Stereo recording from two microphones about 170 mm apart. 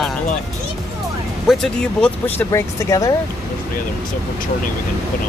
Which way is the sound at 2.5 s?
20° left (ahead or behind).